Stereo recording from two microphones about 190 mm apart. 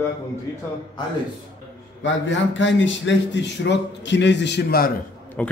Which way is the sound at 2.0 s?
75° left (ahead or behind).